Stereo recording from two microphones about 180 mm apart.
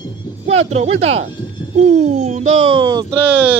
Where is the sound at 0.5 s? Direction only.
35° right (ahead or behind).